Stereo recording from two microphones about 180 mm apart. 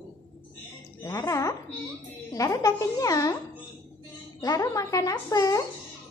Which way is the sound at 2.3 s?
20° left (ahead or behind).